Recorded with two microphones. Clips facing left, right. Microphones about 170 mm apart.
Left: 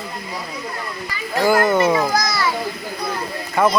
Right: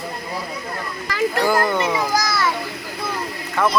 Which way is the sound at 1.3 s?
10° left (ahead or behind).